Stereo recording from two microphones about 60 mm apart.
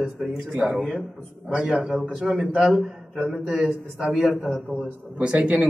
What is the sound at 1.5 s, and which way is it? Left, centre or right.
Speech, centre.